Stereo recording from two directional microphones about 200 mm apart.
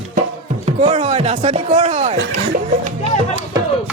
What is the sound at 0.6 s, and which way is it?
Speech, 35° right (ahead or behind).